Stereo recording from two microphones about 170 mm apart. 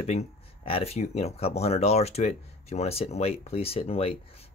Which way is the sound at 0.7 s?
35° left (ahead or behind).